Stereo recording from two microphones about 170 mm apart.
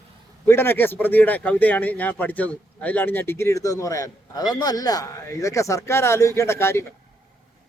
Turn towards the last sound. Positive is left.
turn(degrees=15)  # may be behind; listen again after turning